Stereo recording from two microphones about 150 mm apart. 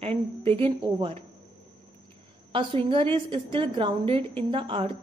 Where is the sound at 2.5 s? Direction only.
35° right (ahead or behind).